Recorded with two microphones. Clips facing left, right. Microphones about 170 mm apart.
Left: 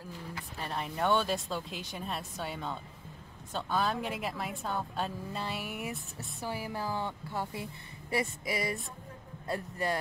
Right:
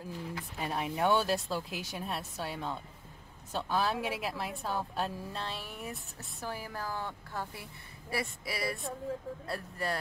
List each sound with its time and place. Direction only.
0.6 s a woman's voice: 5° right (ahead or behind); by 9.9 s 15° left (ahead or behind)